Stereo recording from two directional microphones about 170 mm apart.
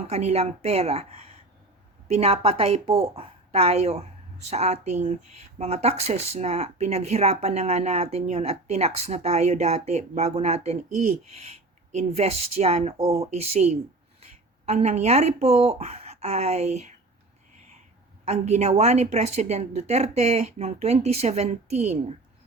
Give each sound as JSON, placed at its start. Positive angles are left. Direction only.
{"t": 0.1, "sound": "speech", "side_deg": -40}
{"t": 2.1, "sound": "speech", "side_deg": -35}
{"t": 18.3, "sound": "speech", "side_deg": -40}